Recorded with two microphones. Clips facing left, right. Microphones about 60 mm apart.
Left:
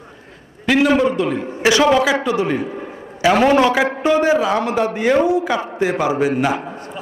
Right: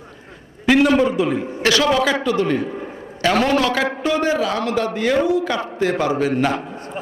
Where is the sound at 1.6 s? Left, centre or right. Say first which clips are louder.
Left 3 dB; centre.